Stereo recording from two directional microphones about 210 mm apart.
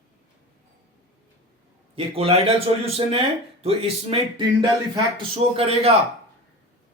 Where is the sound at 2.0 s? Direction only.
25° right (ahead or behind).